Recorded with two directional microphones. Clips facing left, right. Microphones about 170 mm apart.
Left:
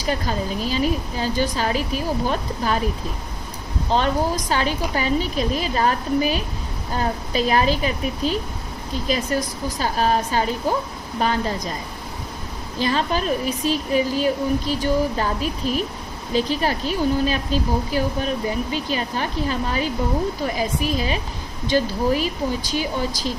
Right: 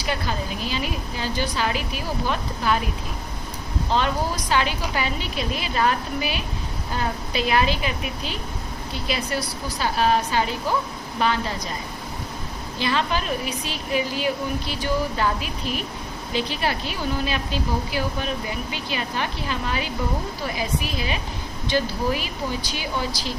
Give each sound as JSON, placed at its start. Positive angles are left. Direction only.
{"t": 0.0, "sound": "a woman's voice", "side_deg": 40}
{"t": 3.9, "sound": "a woman's voice", "side_deg": 40}
{"t": 12.8, "sound": "a woman's voice", "side_deg": 40}